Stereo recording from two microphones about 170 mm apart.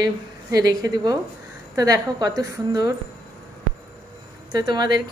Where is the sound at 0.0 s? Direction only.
20° right (ahead or behind).